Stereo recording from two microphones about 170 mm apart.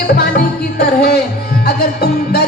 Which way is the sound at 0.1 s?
60° left (ahead or behind).